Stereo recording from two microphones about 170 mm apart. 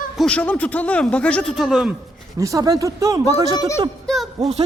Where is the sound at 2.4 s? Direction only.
20° right (ahead or behind).